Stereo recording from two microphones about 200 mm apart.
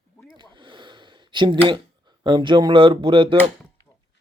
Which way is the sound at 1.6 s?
25° right (ahead or behind).